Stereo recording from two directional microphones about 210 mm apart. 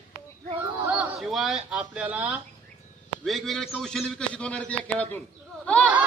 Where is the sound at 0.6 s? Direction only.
5° right (ahead or behind).